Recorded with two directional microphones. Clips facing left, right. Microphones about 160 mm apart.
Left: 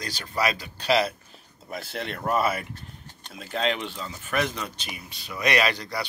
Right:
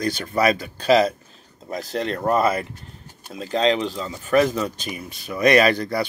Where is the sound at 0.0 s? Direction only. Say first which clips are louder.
Right 7 dB; 50° right (ahead or behind).